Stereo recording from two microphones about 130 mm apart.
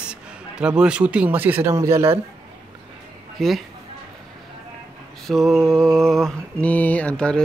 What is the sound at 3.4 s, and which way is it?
Speech, centre (ahead or behind).